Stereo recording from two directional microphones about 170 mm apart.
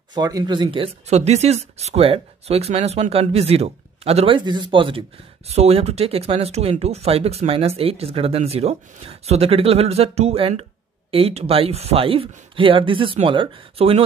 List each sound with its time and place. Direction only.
0.1 s speech: 25° right (ahead or behind)